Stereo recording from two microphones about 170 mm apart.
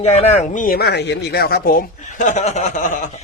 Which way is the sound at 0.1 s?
40° left (ahead or behind).